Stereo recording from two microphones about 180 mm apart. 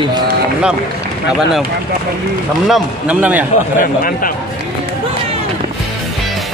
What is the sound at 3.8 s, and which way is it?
Speech, 50° left (ahead or behind).